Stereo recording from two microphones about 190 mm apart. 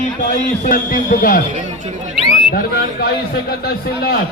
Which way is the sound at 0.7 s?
45° left (ahead or behind).